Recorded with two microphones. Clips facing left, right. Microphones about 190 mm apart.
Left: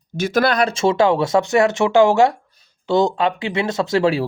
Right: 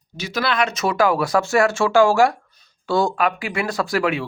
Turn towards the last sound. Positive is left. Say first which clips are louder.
# left 4 dB
turn(degrees=30)  # may be behind; listen again after turning